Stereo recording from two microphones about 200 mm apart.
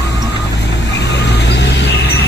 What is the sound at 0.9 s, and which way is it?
Vehicle, 60° left (ahead or behind).